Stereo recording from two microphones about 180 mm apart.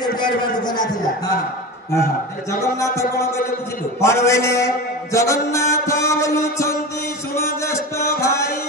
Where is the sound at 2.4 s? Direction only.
15° left (ahead or behind).